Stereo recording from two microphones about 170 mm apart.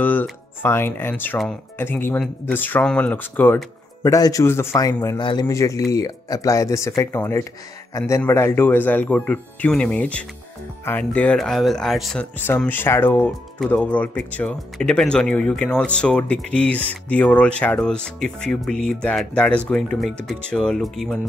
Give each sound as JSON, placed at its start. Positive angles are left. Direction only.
{"t": 0.0, "sound": "a man's voice", "side_deg": 10}
{"t": 12.4, "sound": "speech", "side_deg": 10}